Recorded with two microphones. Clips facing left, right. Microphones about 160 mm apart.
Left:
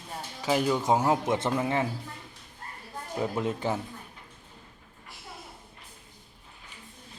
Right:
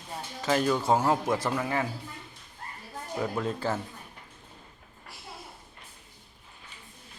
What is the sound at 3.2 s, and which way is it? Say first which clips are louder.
Speech: left 1 dB; 20° left (ahead or behind).